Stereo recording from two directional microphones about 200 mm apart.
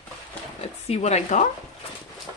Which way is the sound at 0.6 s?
30° left (ahead or behind).